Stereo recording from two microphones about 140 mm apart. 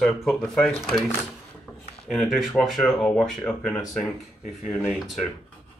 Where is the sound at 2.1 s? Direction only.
Centre (ahead or behind).